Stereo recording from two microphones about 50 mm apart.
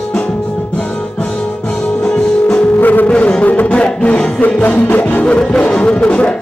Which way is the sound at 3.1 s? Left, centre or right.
Left.